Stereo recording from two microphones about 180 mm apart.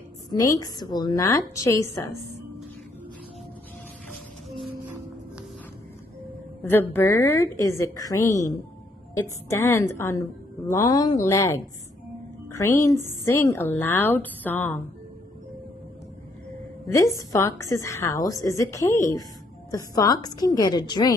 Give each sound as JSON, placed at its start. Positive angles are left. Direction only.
{"t": 0.3, "sound": "a woman's voice", "side_deg": 20}
{"t": 4.1, "sound": "music", "side_deg": 0}
{"t": 6.6, "sound": "a woman's voice", "side_deg": 10}
{"t": 16.8, "sound": "a woman's voice", "side_deg": 15}